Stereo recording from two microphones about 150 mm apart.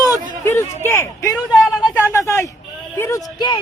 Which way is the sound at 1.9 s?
20° left (ahead or behind).